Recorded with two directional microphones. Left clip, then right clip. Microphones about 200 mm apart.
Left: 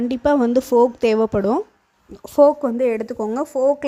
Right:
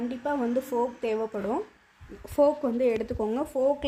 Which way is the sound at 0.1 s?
45° left (ahead or behind).